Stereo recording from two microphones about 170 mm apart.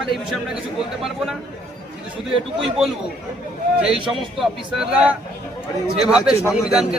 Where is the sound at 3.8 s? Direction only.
5° right (ahead or behind).